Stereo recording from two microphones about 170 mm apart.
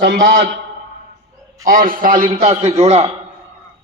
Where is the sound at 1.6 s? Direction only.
55° right (ahead or behind).